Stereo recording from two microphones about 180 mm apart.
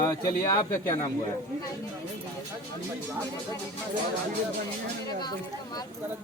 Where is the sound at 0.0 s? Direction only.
20° left (ahead or behind).